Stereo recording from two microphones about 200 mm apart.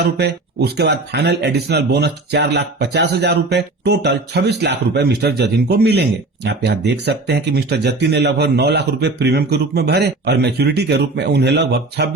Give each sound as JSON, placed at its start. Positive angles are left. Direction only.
{"t": 0.0, "sound": "speech", "side_deg": -55}